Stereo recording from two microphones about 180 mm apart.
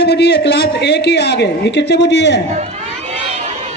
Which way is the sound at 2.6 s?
35° right (ahead or behind).